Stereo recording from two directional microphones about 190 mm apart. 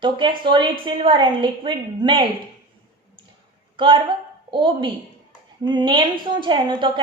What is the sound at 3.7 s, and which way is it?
A woman's voice, 25° right (ahead or behind).